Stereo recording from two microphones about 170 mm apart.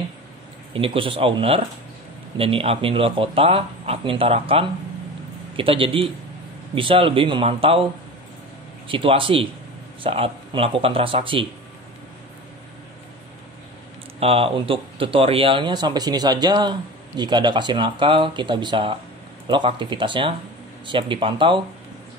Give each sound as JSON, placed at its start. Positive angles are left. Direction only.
{"t": 0.7, "sound": "speech", "side_deg": -30}
{"t": 8.8, "sound": "speech", "side_deg": -30}
{"t": 14.2, "sound": "speech", "side_deg": -35}